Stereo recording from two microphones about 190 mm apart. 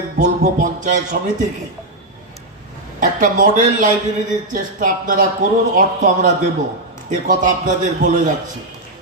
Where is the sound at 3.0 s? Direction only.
45° right (ahead or behind).